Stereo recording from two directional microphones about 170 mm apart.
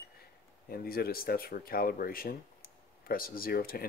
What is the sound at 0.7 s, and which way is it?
Speech, 60° left (ahead or behind).